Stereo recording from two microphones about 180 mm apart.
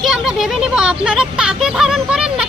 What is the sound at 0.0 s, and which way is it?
A woman's voice, centre (ahead or behind).